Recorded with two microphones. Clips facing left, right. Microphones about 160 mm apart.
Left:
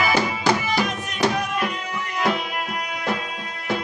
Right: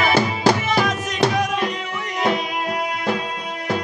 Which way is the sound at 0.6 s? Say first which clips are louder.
Right 3 dB; 90° right.